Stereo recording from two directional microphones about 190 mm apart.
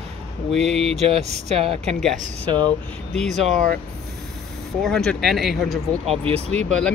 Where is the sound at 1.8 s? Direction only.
Centre (ahead or behind).